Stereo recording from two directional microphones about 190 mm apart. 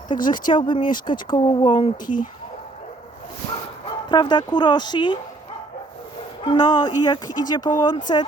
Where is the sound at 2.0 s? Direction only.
45° left (ahead or behind).